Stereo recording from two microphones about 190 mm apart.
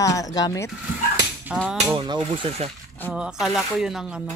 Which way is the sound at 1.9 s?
25° right (ahead or behind).